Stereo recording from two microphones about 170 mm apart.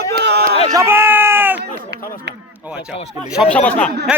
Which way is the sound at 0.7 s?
15° right (ahead or behind).